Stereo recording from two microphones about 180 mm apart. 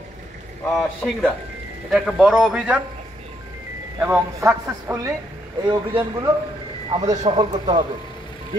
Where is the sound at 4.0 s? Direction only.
10° right (ahead or behind).